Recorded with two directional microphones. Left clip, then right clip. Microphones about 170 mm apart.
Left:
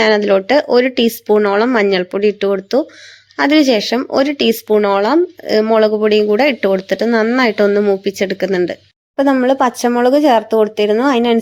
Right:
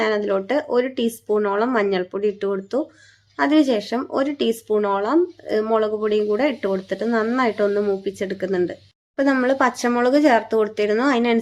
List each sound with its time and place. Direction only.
0.0 s speech: 25° left (ahead or behind)